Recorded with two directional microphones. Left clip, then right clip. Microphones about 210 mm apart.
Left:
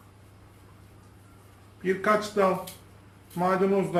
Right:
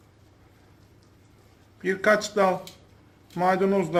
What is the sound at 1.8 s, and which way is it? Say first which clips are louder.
Speech: right 3 dB; 30° right (ahead or behind).